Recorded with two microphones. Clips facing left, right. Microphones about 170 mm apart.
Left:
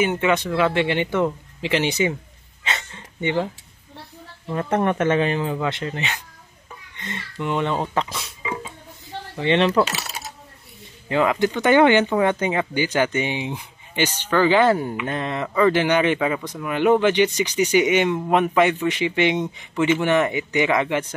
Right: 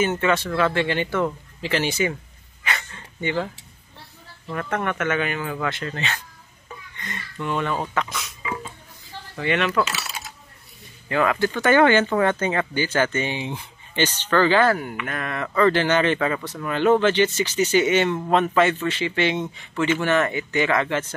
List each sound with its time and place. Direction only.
0.0 s speech: 15° left (ahead or behind)
2.6 s dog: 20° left (ahead or behind)
4.5 s speech: 30° left (ahead or behind)
9.4 s speech: 30° left (ahead or behind)
11.1 s speech: 20° left (ahead or behind)